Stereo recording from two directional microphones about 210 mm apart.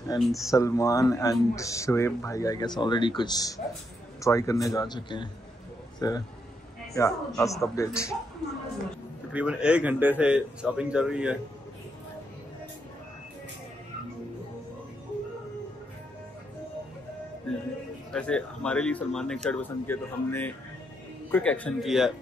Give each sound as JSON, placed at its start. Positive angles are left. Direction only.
{"t": 0.1, "sound": "speech", "side_deg": 20}
{"t": 9.3, "sound": "speech", "side_deg": -5}
{"t": 18.1, "sound": "speech", "side_deg": 5}